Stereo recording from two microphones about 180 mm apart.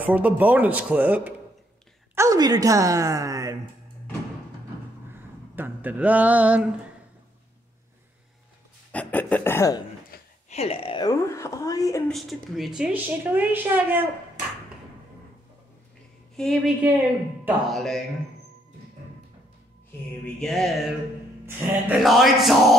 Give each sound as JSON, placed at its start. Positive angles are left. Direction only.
{"t": 0.0, "sound": "a woman's voice", "side_deg": -10}
{"t": 2.1, "sound": "a woman's voice", "side_deg": -20}
{"t": 5.6, "sound": "speech", "side_deg": -10}
{"t": 8.9, "sound": "speech", "side_deg": 10}
{"t": 10.1, "sound": "a sound", "side_deg": 55}
{"t": 10.5, "sound": "speech", "side_deg": 35}
{"t": 11.1, "sound": "speech", "side_deg": 15}
{"t": 12.1, "sound": "a woman's voice", "side_deg": 0}
{"t": 16.3, "sound": "speech", "side_deg": 0}
{"t": 20.3, "sound": "speech", "side_deg": 0}
{"t": 21.5, "sound": "a woman's voice", "side_deg": -10}
{"t": 21.9, "sound": "speech", "side_deg": 0}